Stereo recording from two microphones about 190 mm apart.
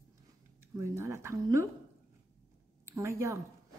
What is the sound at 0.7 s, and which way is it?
Speech, 15° right (ahead or behind).